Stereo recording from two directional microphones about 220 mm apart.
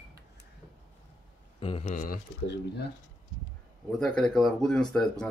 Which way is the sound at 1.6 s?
25° left (ahead or behind).